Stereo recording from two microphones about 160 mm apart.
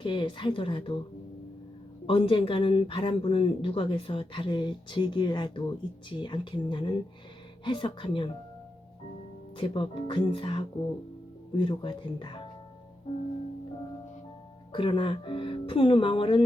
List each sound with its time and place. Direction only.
0.0 s speech: 30° left (ahead or behind)
2.0 s speech: 35° left (ahead or behind)
9.6 s speech: 35° left (ahead or behind)
14.7 s speech: 30° left (ahead or behind)